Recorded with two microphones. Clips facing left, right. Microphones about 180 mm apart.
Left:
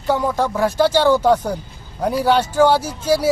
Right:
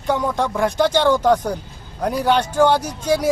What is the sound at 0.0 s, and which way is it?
Speech, 5° left (ahead or behind).